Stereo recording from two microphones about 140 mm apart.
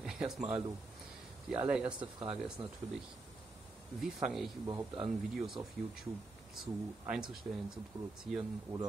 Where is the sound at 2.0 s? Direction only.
35° right (ahead or behind).